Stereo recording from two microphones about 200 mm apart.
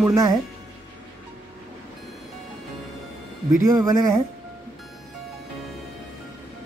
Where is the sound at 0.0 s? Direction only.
15° right (ahead or behind).